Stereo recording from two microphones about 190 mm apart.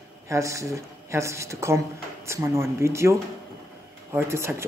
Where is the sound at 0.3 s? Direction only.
15° right (ahead or behind).